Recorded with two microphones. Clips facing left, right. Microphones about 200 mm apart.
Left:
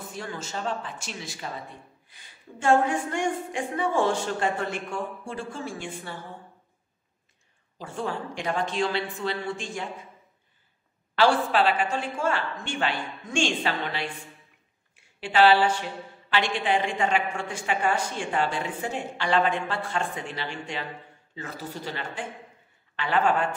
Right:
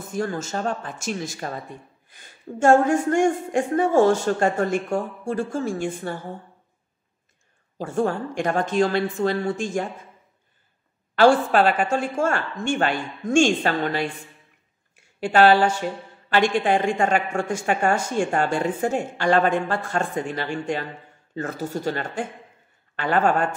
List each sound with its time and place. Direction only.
0.1 s a woman's voice: 45° right (ahead or behind)
7.7 s a woman's voice: 50° right (ahead or behind)
11.1 s a woman's voice: 45° right (ahead or behind)
15.1 s a woman's voice: 45° right (ahead or behind)